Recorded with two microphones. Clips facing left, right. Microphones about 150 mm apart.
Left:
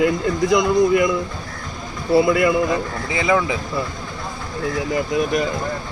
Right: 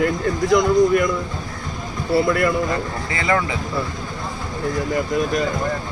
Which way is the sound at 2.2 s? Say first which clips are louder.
Left 3 dB; 10° left (ahead or behind).